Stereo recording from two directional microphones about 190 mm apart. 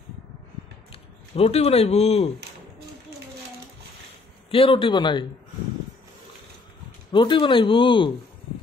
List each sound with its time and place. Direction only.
1.3 s speech: 30° left (ahead or behind)
4.5 s speech: 30° left (ahead or behind)
7.1 s speech: 25° left (ahead or behind)